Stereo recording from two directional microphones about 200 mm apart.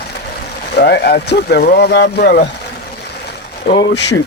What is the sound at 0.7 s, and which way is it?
Speech, 55° left (ahead or behind).